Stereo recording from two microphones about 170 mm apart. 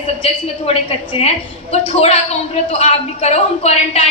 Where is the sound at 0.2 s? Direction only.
35° left (ahead or behind).